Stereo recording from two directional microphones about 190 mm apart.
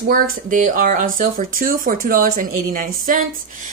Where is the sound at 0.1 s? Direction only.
45° right (ahead or behind).